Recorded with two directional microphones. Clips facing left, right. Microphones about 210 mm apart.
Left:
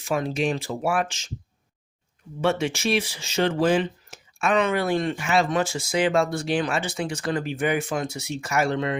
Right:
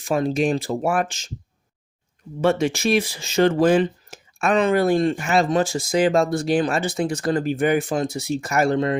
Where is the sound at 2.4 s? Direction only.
40° right (ahead or behind).